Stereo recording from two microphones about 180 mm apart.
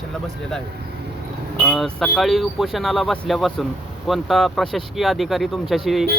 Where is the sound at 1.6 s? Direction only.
Centre (ahead or behind).